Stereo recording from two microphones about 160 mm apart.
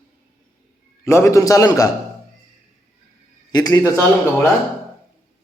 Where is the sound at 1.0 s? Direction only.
15° left (ahead or behind).